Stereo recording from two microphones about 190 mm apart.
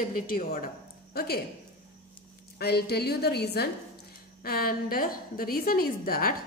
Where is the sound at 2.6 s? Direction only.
55° left (ahead or behind).